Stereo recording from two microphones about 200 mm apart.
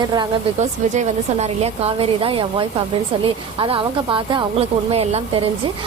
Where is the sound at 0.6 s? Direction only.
35° right (ahead or behind).